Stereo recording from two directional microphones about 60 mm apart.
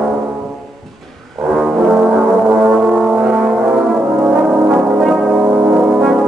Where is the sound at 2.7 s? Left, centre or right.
Centre.